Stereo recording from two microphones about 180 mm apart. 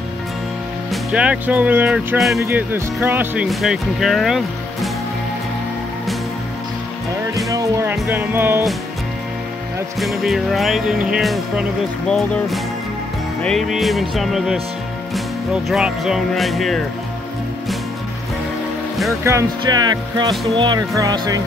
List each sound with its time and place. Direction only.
1.1 s speech: 5° right (ahead or behind)
2.4 s speech: 10° right (ahead or behind)
7.4 s speech: 15° right (ahead or behind)
9.9 s speech: centre (ahead or behind)
15.7 s speech: centre (ahead or behind)
19.2 s speech: 20° right (ahead or behind)